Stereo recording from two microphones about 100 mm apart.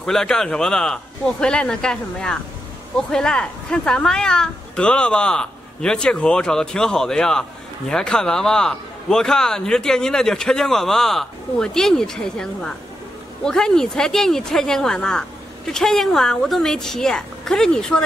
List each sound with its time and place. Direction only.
0.0 s a woman's voice: 5° left (ahead or behind)